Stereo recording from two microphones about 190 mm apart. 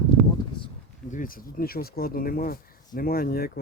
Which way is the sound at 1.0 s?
45° left (ahead or behind).